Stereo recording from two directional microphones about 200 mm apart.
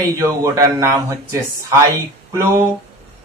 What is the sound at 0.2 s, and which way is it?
Speech, 15° right (ahead or behind).